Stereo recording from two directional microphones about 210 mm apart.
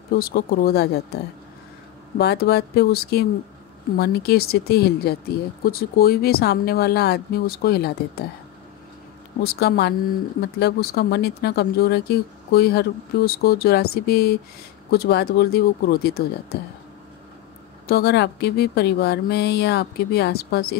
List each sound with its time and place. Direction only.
0.1 s speech: 45° left (ahead or behind)
2.1 s speech: 50° left (ahead or behind)
9.4 s speech: 50° left (ahead or behind)
17.8 s speech: 50° left (ahead or behind)